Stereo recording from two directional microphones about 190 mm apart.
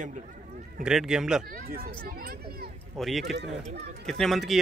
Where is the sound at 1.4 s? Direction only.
50° right (ahead or behind).